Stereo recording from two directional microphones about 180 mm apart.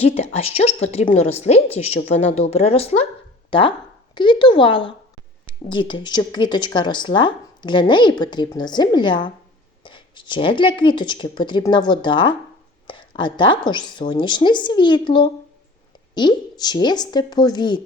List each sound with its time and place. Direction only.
0.0 s a woman's voice: 35° left (ahead or behind)